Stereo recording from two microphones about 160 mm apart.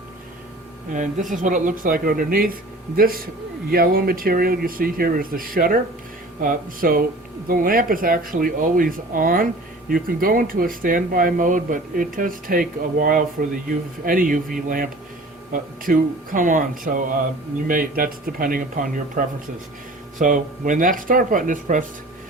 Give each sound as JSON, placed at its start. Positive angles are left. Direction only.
{"t": 0.9, "sound": "speech", "side_deg": -55}